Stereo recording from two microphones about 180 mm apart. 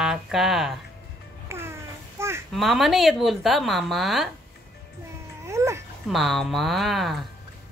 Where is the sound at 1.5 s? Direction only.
15° right (ahead or behind).